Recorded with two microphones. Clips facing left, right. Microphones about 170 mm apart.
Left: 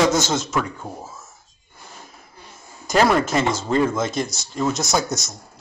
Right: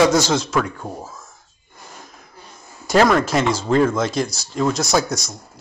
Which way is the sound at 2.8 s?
Centre (ahead or behind).